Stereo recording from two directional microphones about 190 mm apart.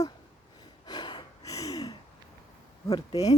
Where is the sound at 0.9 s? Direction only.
25° left (ahead or behind).